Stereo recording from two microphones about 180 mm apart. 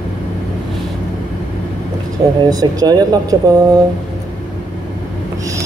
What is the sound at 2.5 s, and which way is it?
Speech, 20° right (ahead or behind).